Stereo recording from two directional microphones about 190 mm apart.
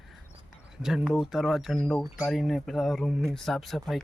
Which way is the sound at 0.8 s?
Centre (ahead or behind).